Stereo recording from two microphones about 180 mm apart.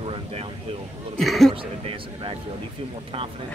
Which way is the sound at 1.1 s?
Centre (ahead or behind).